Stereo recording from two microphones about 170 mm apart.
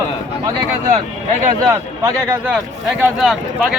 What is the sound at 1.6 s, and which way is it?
A man's voice, 20° right (ahead or behind).